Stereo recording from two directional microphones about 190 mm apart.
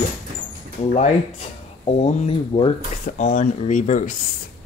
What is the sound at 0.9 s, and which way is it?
Speech, 35° left (ahead or behind).